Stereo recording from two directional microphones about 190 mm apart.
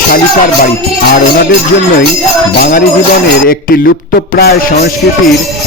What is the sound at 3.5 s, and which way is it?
Speech, 55° left (ahead or behind).